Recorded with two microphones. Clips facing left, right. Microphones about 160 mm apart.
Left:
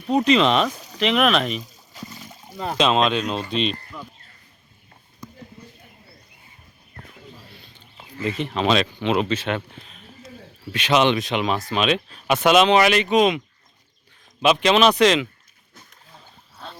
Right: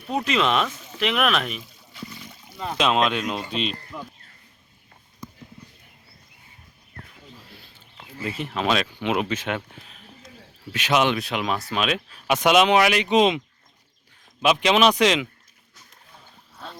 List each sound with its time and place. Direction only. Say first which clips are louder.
0.3 s speech: left 4 dB; 5° right (ahead or behind)
0.6 s a sound: left 4 dB; 35° left (ahead or behind)
0.9 s speech: left 4 dB; 5° right (ahead or behind)
1.5 s a sound: left 4 dB; 40° left (ahead or behind)
2.8 s speech: left 2 dB; 25° left (ahead or behind)
3.5 s speech: left 4 dB; 5° right (ahead or behind)
8.2 s speech: left 4 dB; 10° right (ahead or behind)
14.4 s speech: left 2 dB; 10° right (ahead or behind)